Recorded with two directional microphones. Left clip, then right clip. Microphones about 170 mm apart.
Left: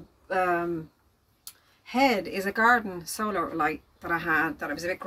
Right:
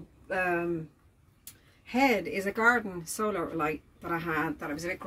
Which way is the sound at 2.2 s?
20° right (ahead or behind).